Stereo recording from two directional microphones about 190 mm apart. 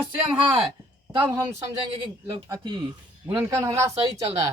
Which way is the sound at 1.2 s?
15° right (ahead or behind).